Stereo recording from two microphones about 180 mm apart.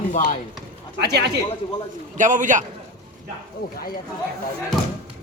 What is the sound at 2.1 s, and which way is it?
Speech, 45° right (ahead or behind).